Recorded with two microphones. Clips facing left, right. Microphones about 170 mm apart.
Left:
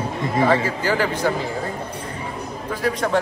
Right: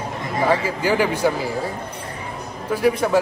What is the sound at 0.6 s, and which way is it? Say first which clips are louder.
Speech: right 2 dB; 15° right (ahead or behind).